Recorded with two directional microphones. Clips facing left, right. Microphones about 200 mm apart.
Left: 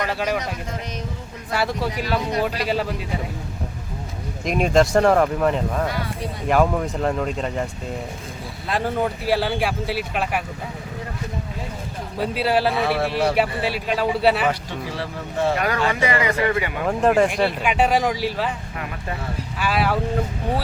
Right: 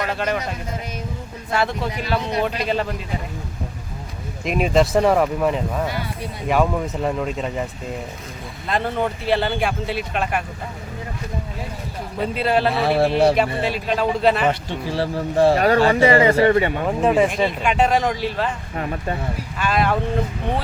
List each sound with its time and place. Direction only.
1.5 s a man's voice: 10° left (ahead or behind)
4.4 s a man's voice: centre (ahead or behind)
12.2 s a man's voice: 5° left (ahead or behind)
12.8 s speech: 30° right (ahead or behind)
13.3 s a man's voice: 10° left (ahead or behind)
14.7 s speech: 30° right (ahead or behind)
17.0 s a man's voice: centre (ahead or behind)
18.8 s speech: 35° right (ahead or behind)
19.5 s a man's voice: 5° left (ahead or behind)